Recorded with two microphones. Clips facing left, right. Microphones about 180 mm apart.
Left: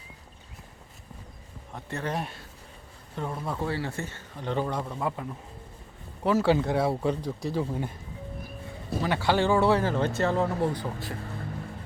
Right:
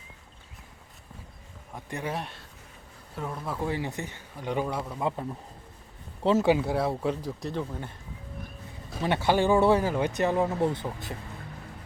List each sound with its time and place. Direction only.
1.7 s speech: 10° right (ahead or behind)
2.1 s speech: centre (ahead or behind)
3.6 s speech: 15° right (ahead or behind)
6.2 s speech: 25° right (ahead or behind)
6.5 s speech: 5° right (ahead or behind)
7.7 s speech: 15° left (ahead or behind)
9.0 s speech: 20° right (ahead or behind)